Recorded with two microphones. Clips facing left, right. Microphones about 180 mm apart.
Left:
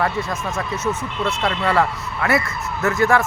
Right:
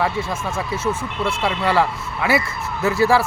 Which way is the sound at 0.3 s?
5° right (ahead or behind).